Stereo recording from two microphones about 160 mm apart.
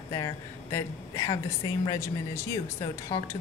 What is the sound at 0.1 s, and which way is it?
Speech, 20° left (ahead or behind).